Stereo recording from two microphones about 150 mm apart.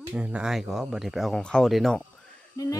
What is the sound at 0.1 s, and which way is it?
Speech, 10° right (ahead or behind).